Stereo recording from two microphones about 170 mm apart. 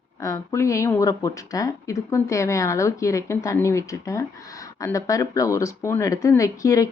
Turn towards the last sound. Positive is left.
turn(degrees=20)  # may be behind; listen again after turning